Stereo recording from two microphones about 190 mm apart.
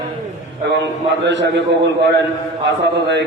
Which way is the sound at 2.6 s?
65° right (ahead or behind).